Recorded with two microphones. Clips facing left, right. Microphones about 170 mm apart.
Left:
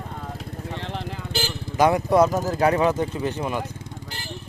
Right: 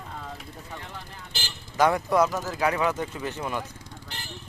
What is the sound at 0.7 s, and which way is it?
Vehicle, 85° left.